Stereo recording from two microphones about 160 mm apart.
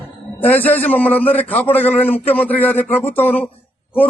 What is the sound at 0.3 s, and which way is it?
A man's voice, 10° left (ahead or behind).